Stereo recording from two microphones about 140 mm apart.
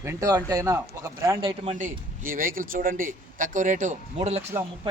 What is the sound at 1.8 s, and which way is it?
A man's voice, 80° right.